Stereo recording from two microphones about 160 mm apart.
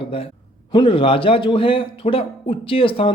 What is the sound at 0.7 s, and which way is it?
A man's voice, 30° left (ahead or behind).